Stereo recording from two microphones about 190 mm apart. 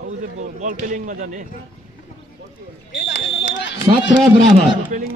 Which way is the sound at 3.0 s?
70° left (ahead or behind).